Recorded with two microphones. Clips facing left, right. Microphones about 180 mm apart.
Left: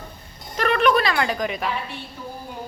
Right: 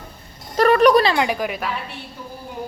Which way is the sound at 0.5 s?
40° right (ahead or behind).